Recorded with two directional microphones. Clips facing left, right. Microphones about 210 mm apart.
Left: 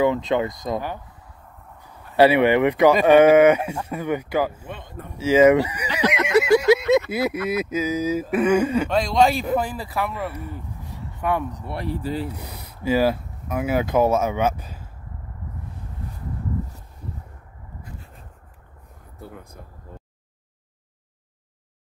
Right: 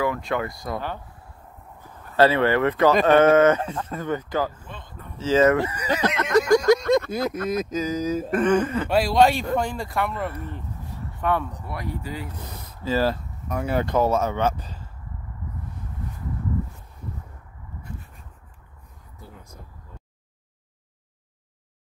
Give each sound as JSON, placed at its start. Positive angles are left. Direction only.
{"t": 0.0, "sound": "speech", "side_deg": 20}
{"t": 2.1, "sound": "speech", "side_deg": 15}
{"t": 5.9, "sound": "a sound", "side_deg": 10}
{"t": 7.1, "sound": "speech", "side_deg": 10}
{"t": 8.9, "sound": "speech", "side_deg": -5}
{"t": 11.6, "sound": "speech", "side_deg": 30}
{"t": 12.3, "sound": "speech", "side_deg": 10}
{"t": 19.1, "sound": "a sound", "side_deg": 55}